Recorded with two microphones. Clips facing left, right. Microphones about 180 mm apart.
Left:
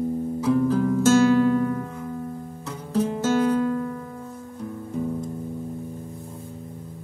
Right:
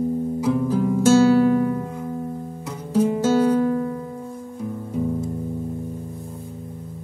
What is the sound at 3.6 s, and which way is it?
Music, 25° right (ahead or behind).